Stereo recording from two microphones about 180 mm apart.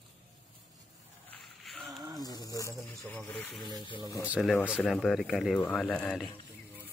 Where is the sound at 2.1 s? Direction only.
20° left (ahead or behind).